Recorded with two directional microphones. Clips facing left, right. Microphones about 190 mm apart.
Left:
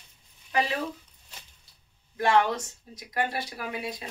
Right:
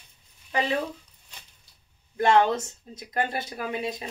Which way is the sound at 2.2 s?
25° right (ahead or behind).